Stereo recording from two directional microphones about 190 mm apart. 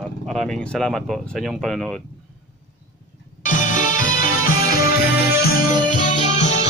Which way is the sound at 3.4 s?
40° left (ahead or behind).